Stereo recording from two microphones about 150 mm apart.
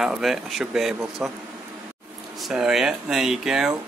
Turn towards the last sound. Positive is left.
turn(degrees=-5)  # may be behind; listen again after turning